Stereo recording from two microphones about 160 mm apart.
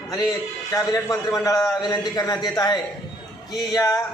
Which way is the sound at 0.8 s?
20° left (ahead or behind).